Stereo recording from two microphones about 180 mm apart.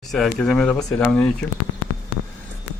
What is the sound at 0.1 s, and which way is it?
Speech, centre (ahead or behind).